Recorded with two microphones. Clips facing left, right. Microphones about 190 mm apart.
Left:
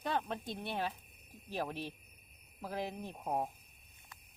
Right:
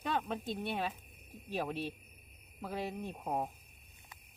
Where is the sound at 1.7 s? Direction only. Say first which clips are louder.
Right 4 dB; 15° left (ahead or behind).